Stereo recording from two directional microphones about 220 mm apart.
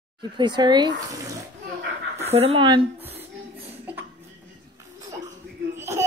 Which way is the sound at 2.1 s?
30° right (ahead or behind).